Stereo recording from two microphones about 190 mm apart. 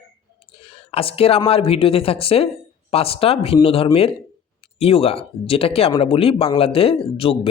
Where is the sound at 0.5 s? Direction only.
30° left (ahead or behind).